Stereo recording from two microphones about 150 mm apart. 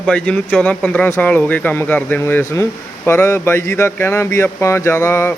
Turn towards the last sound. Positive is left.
turn(degrees=15)  # may be behind; listen again after turning